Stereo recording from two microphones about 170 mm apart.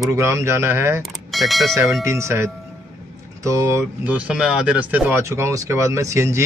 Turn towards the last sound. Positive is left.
turn(degrees=-15)  # may be behind; listen again after turning